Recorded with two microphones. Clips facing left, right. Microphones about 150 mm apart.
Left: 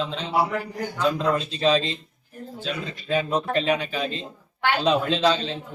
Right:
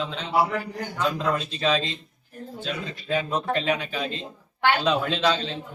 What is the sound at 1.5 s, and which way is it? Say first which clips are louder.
Speech: left 3 dB; 30° left (ahead or behind).